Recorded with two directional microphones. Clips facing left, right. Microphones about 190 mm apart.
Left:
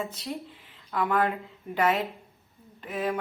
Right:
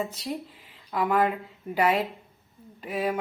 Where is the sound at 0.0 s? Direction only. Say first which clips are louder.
Right 2 dB; 5° right (ahead or behind).